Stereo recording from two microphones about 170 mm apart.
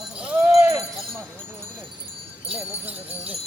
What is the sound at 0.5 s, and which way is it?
Jingle bell, 15° right (ahead or behind).